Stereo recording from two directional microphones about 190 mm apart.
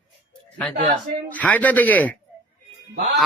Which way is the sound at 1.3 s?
10° left (ahead or behind).